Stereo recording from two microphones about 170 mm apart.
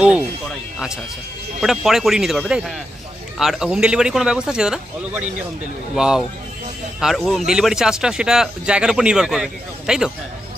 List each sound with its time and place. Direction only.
1.6 s speech: centre (ahead or behind)